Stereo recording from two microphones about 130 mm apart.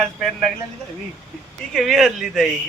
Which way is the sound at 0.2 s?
Centre (ahead or behind).